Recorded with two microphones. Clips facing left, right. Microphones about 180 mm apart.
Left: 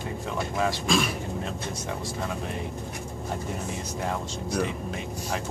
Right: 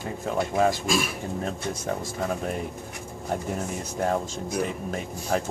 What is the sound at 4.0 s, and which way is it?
Speech, 50° right (ahead or behind).